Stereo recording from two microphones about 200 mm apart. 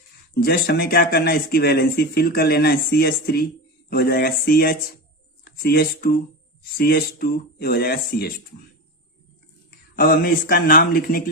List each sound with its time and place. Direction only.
0.3 s speech: 55° left (ahead or behind)
9.9 s speech: 45° left (ahead or behind)